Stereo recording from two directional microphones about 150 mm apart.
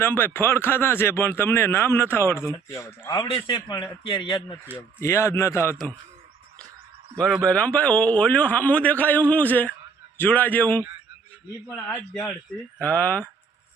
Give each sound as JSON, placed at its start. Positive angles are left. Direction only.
{"t": 0.0, "sound": "speech", "side_deg": 15}
{"t": 3.3, "sound": "a man's voice", "side_deg": 30}
{"t": 4.9, "sound": "speech", "side_deg": 20}
{"t": 7.4, "sound": "a man's voice", "side_deg": 10}